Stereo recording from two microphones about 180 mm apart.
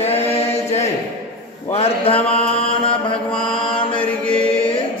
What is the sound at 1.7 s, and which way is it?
Speech, 30° left (ahead or behind).